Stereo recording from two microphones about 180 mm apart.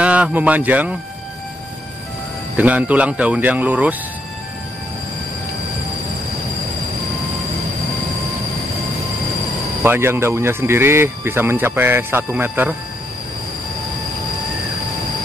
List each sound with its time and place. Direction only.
0.0 s a man's voice: 5° right (ahead or behind)
2.5 s speech: 10° right (ahead or behind)
9.8 s speech: 15° right (ahead or behind)